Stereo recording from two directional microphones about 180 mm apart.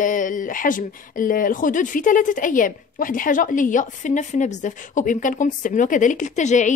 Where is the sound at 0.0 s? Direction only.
45° left (ahead or behind).